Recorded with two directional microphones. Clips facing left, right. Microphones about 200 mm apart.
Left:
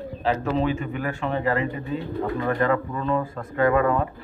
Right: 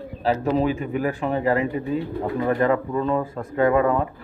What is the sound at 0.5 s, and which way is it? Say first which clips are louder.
Speech: right 2 dB; 10° right (ahead or behind).